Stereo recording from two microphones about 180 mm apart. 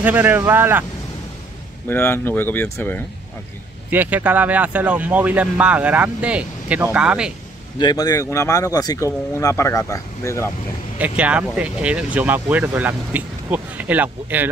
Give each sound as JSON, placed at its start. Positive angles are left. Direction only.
{"t": 0.0, "sound": "speech", "side_deg": -10}
{"t": 1.9, "sound": "speech", "side_deg": 10}
{"t": 3.9, "sound": "speech", "side_deg": -10}
{"t": 7.8, "sound": "speech", "side_deg": 20}
{"t": 11.1, "sound": "speech", "side_deg": -5}